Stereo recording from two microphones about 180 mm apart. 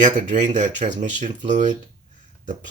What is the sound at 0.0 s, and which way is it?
Speech, 45° right (ahead or behind).